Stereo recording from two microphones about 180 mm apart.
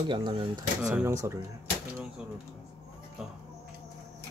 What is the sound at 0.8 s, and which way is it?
Speech, 15° right (ahead or behind).